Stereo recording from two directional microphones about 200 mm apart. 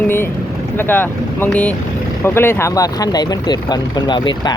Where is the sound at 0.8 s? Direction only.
10° left (ahead or behind).